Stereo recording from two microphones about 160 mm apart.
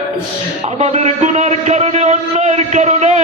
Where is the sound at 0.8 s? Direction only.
45° right (ahead or behind).